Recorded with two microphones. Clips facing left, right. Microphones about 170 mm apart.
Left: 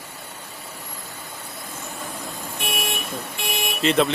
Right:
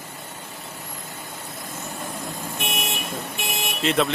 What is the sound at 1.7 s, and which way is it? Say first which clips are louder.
Vehicle: right 1 dB; 20° right (ahead or behind).